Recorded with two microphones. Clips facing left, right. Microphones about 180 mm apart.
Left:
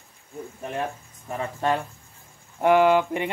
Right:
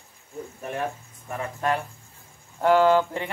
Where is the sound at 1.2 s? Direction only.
25° left (ahead or behind).